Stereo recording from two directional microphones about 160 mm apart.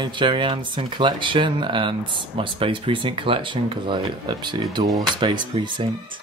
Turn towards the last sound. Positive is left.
turn(degrees=-30)  # may be behind; listen again after turning